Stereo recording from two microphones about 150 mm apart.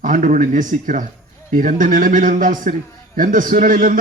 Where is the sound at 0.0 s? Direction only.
60° right (ahead or behind).